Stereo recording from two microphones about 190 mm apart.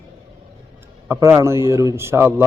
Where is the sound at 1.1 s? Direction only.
15° right (ahead or behind).